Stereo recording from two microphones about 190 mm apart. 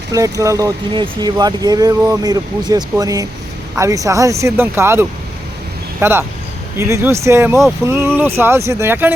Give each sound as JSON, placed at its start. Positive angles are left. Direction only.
{"t": 0.1, "sound": "speech", "side_deg": -15}